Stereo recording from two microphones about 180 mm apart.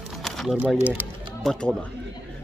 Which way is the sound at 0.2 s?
Centre (ahead or behind).